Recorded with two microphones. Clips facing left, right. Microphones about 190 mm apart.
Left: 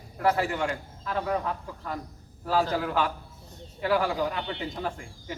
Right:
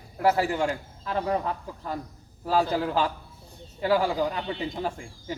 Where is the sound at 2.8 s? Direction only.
30° right (ahead or behind).